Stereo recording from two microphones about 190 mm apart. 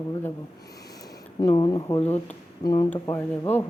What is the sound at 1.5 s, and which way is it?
Speech, 25° left (ahead or behind).